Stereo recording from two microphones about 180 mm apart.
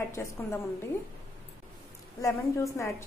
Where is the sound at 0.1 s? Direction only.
15° left (ahead or behind).